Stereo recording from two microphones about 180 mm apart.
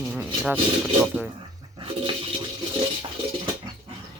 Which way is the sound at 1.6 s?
30° right (ahead or behind).